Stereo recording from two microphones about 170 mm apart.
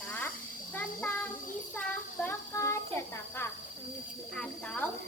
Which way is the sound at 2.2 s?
15° left (ahead or behind).